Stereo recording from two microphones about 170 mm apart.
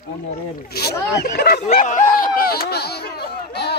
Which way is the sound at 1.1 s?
70° left (ahead or behind).